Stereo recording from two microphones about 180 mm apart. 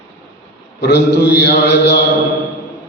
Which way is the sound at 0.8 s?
65° left (ahead or behind).